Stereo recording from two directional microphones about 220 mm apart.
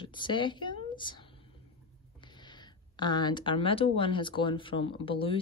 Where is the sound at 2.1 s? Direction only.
20° left (ahead or behind).